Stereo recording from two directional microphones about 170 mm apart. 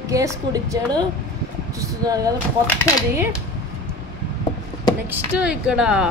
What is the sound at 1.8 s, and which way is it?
Speech, 20° right (ahead or behind).